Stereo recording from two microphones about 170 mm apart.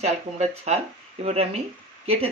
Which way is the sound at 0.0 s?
40° right (ahead or behind).